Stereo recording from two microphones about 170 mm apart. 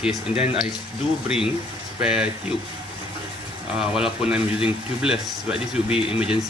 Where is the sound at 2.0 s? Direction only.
5° right (ahead or behind).